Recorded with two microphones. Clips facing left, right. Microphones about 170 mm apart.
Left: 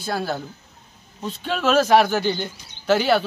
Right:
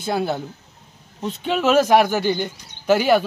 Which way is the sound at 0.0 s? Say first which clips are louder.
Right 3 dB; 20° right (ahead or behind).